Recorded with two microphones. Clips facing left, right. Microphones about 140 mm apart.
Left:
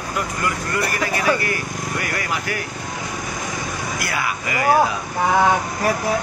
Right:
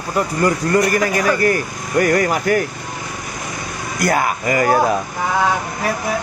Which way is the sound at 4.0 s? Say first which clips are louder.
Right 12 dB; 45° right (ahead or behind).